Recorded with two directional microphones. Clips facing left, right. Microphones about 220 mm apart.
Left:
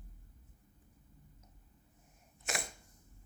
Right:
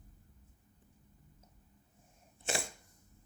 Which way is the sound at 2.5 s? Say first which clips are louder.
Right 4 dB; 30° right (ahead or behind).